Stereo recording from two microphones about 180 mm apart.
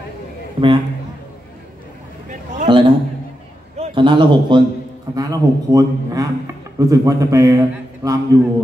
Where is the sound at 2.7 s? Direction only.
30° right (ahead or behind).